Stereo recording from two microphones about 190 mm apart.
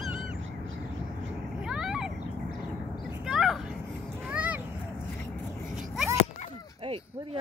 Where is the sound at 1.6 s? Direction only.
5° right (ahead or behind).